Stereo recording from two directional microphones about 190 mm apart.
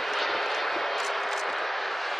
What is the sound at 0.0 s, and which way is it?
Vehicle, centre (ahead or behind).